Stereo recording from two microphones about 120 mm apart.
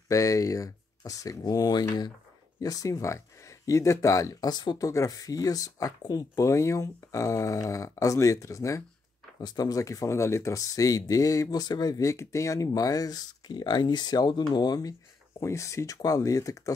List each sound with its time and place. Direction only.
0.1 s speech: 25° left (ahead or behind)